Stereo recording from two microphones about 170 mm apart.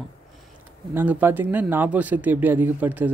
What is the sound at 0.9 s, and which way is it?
Speech, 10° right (ahead or behind).